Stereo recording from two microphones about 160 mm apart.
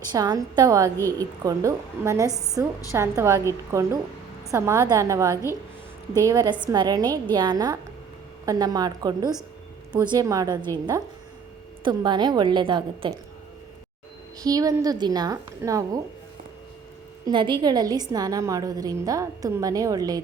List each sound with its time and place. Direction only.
0.1 s a woman's voice: 25° right (ahead or behind)
0.9 s a woman's voice: 15° left (ahead or behind)
1.5 s a woman's voice: 20° right (ahead or behind)
14.4 s a woman's voice: 20° right (ahead or behind)
17.2 s a woman's voice: 30° right (ahead or behind)